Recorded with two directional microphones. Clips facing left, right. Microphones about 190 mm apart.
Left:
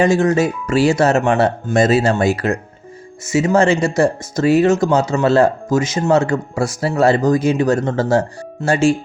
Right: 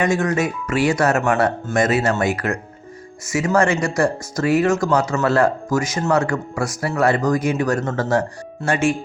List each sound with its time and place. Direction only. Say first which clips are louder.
0.0 s speech: left 5 dB; 30° left (ahead or behind)